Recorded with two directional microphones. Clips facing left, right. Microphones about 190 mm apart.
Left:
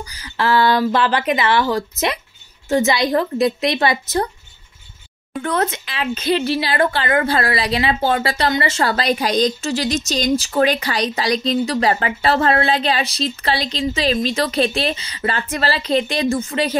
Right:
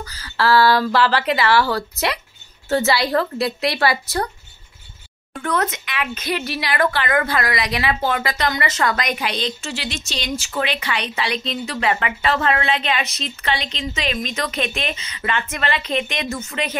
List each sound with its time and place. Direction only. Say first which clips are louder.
0.0 s speech: even; 15° left (ahead or behind)
5.3 s speech: left 2 dB; 25° left (ahead or behind)